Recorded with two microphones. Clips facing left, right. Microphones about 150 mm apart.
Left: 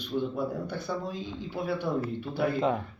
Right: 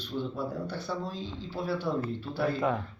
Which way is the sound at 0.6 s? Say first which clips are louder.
Left 1 dB; 15° left (ahead or behind).